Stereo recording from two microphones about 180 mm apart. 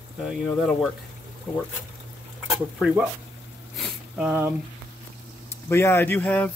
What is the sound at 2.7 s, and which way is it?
Speech, 5° right (ahead or behind).